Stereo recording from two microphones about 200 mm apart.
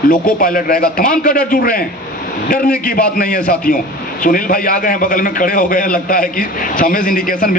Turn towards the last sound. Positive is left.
turn(degrees=45)  # may be behind; listen again after turning